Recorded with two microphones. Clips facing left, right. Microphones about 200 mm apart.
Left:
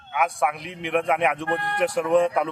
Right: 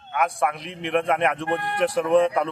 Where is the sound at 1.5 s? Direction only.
20° right (ahead or behind).